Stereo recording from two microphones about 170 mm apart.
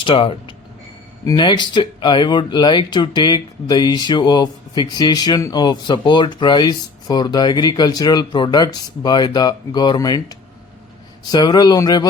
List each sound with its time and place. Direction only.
0.0 s speech: 30° left (ahead or behind)